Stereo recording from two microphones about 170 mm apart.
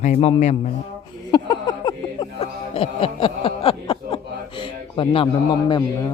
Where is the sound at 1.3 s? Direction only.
25° left (ahead or behind).